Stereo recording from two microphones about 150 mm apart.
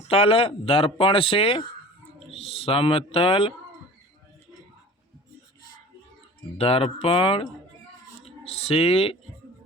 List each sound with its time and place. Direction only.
0.1 s speech: 40° left (ahead or behind)
6.6 s speech: 40° left (ahead or behind)